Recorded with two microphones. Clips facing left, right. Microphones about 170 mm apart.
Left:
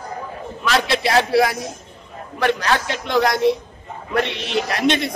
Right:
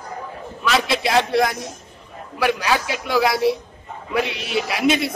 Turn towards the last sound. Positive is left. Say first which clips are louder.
# even
turn(degrees=-5)  # may be behind; listen again after turning